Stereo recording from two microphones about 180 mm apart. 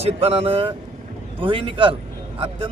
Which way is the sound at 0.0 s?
35° right (ahead or behind).